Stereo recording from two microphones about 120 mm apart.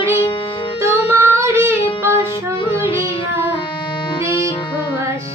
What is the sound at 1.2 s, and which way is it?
Child singing, 25° right (ahead or behind).